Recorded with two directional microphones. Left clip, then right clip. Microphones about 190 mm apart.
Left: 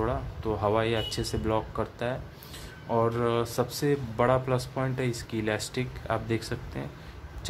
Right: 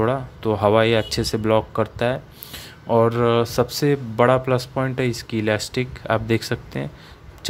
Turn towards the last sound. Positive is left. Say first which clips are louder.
# right 9 dB
turn(degrees=-35)  # may be behind; listen again after turning